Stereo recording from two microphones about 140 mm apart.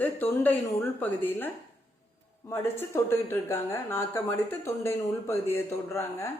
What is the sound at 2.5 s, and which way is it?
Speech, 15° left (ahead or behind).